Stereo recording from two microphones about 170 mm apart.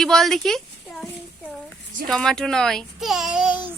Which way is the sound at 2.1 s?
5° left (ahead or behind).